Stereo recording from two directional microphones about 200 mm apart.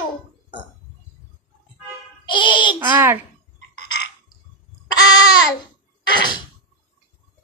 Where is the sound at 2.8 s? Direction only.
10° right (ahead or behind).